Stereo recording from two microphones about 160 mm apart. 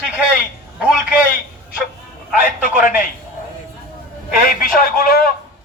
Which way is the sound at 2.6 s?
55° left (ahead or behind).